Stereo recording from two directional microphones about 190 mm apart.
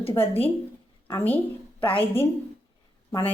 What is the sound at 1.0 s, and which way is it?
A woman's voice, 10° left (ahead or behind).